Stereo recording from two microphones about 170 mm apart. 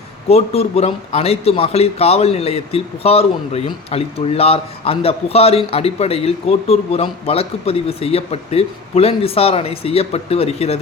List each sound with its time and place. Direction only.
0.3 s a man's voice: 35° left (ahead or behind)